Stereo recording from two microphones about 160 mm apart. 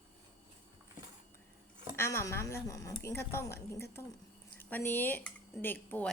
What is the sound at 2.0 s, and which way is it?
A woman's voice, 15° left (ahead or behind).